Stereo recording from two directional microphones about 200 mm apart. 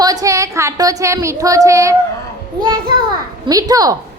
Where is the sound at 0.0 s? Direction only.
20° right (ahead or behind).